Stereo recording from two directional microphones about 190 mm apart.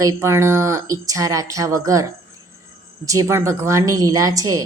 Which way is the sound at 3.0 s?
15° right (ahead or behind).